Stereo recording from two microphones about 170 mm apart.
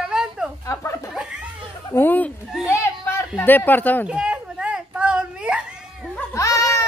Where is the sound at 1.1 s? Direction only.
5° right (ahead or behind).